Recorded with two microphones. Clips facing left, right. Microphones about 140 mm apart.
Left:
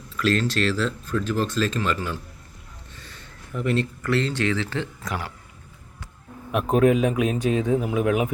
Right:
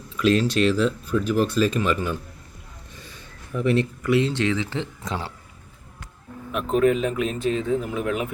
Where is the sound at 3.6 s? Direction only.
15° right (ahead or behind).